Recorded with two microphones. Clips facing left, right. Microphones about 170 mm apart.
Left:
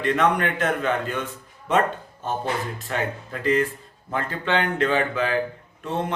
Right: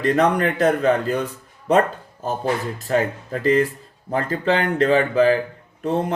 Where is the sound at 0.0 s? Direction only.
40° right (ahead or behind).